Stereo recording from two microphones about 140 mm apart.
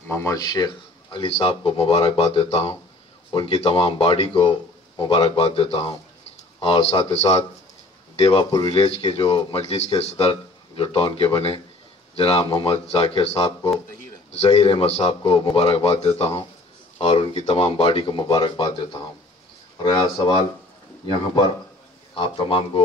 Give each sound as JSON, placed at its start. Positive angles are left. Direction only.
{"t": 0.1, "sound": "speech", "side_deg": 20}
{"t": 1.1, "sound": "a man's voice", "side_deg": 40}
{"t": 8.5, "sound": "speech", "side_deg": 30}
{"t": 8.7, "sound": "a man's voice", "side_deg": 45}
{"t": 22.1, "sound": "speech", "side_deg": 40}